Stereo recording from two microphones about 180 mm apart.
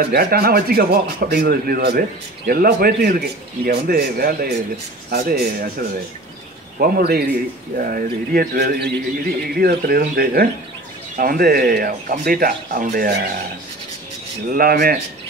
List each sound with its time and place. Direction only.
0.0 s speech: 55° right (ahead or behind)
14.5 s speech: 55° right (ahead or behind)